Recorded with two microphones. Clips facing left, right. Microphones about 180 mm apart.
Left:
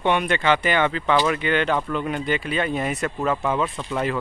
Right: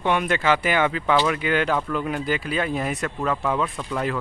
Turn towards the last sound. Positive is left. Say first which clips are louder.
# left 1 dB
turn(degrees=0)  # may be behind; listen again after turning